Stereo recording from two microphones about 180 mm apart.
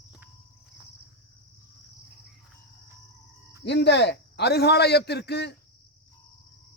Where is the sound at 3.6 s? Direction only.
70° left (ahead or behind).